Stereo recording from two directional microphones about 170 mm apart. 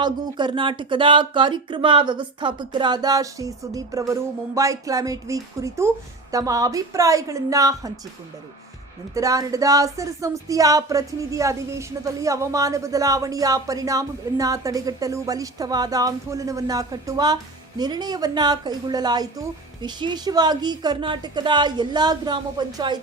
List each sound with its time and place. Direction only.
0.0 s speech: 25° right (ahead or behind)
9.1 s speech: 20° right (ahead or behind)